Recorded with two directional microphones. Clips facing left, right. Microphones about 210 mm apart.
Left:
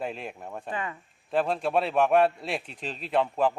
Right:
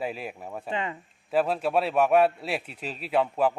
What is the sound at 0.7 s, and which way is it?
Speech, 25° right (ahead or behind).